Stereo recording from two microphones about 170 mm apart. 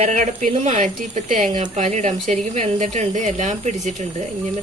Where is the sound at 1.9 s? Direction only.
45° right (ahead or behind).